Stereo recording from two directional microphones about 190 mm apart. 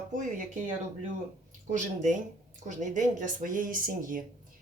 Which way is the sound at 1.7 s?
45° right (ahead or behind).